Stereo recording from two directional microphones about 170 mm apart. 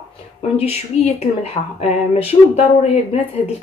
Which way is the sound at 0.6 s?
40° left (ahead or behind).